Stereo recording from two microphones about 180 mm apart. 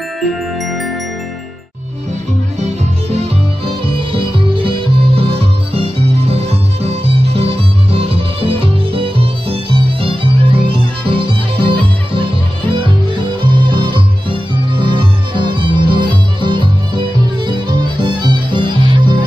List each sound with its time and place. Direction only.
0.3 s glockenspiel: centre (ahead or behind)
2.6 s music: 35° right (ahead or behind)